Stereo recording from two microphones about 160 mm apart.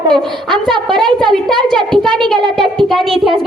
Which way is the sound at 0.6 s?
30° right (ahead or behind).